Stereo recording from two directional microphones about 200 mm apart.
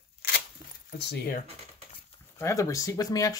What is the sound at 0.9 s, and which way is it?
Speech, 55° left (ahead or behind).